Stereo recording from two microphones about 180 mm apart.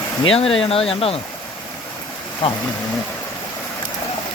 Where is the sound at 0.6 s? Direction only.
30° left (ahead or behind).